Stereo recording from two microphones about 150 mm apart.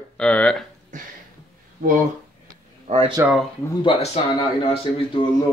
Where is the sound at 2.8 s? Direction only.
40° right (ahead or behind).